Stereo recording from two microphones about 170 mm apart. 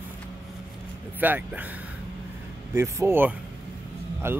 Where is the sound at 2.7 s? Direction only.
15° right (ahead or behind).